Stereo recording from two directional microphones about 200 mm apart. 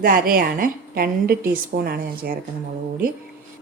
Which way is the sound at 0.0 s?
45° right (ahead or behind).